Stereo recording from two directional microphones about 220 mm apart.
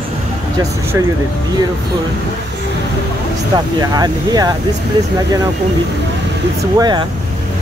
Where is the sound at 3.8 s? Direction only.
15° right (ahead or behind).